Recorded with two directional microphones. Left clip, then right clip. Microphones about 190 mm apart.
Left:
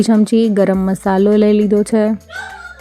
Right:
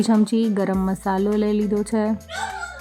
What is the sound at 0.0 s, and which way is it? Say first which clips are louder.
Speech: left 7 dB; 25° left (ahead or behind).